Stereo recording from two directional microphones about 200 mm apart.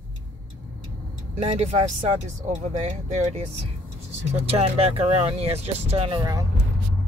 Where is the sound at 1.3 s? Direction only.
35° right (ahead or behind).